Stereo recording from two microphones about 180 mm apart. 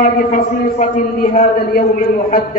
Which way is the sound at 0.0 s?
50° left (ahead or behind).